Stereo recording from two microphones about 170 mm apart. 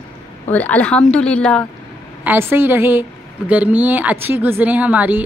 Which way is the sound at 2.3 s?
15° right (ahead or behind).